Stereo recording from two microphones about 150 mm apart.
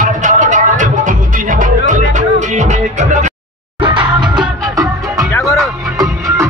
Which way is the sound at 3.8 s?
30° right (ahead or behind).